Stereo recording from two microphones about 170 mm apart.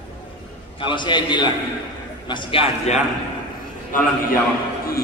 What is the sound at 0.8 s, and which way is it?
A man's voice, 30° left (ahead or behind).